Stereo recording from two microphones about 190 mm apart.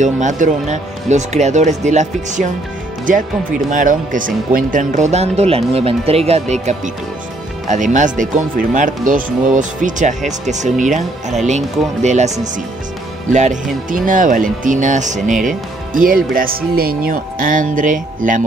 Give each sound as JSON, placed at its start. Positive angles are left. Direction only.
{"t": 0.0, "sound": "speech", "side_deg": -40}
{"t": 3.7, "sound": "speech", "side_deg": -45}